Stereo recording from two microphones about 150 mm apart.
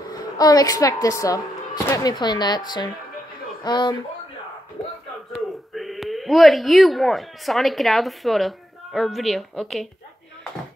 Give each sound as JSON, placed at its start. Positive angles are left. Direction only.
{"t": 0.1, "sound": "a woman's voice", "side_deg": 25}
{"t": 5.3, "sound": "speech", "side_deg": 0}